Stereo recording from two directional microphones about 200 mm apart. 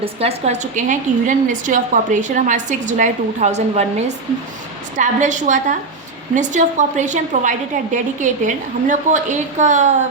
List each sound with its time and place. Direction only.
0.0 s a woman's voice: 30° right (ahead or behind)